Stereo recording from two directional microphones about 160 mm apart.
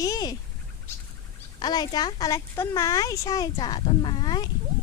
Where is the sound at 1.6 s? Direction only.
25° left (ahead or behind).